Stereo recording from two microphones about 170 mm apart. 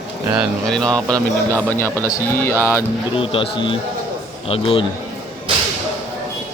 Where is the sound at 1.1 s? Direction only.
15° right (ahead or behind).